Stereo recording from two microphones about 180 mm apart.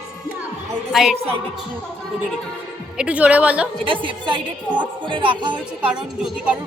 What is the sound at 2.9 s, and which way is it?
Speech, 5° right (ahead or behind).